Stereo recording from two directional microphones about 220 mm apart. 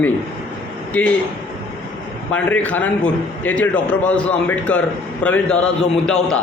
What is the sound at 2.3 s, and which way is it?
A man's voice, 5° left (ahead or behind).